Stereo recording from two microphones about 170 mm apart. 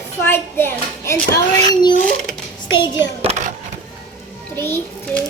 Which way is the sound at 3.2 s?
40° right (ahead or behind).